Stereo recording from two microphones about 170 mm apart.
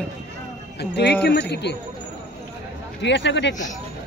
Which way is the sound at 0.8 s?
75° left (ahead or behind).